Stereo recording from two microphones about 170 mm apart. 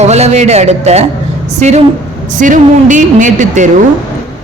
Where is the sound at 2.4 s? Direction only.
50° right (ahead or behind).